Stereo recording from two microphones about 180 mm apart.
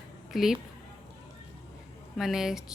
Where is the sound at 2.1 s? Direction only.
Centre (ahead or behind).